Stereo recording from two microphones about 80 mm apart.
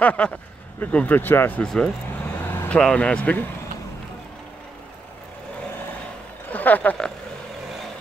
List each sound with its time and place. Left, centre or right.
0.0 s speech: centre
1.6 s speech: centre
2.4 s vehicle: left
2.7 s speech: centre
6.5 s a sound: left